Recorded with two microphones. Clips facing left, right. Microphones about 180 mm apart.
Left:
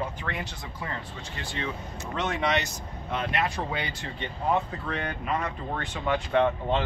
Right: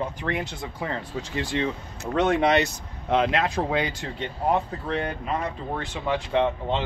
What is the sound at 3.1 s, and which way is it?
Speech, 90° right.